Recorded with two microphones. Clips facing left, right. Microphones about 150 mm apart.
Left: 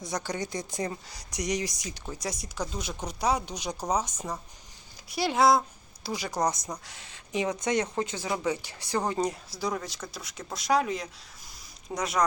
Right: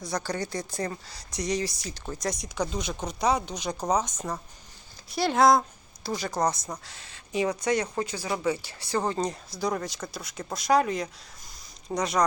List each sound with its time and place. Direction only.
0.0 s speech: 20° left (ahead or behind); by 12.2 s 5° left (ahead or behind)